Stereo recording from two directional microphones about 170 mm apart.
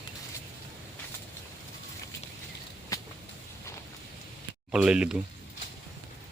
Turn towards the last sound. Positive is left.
turn(degrees=-5)  # may be behind; listen again after turning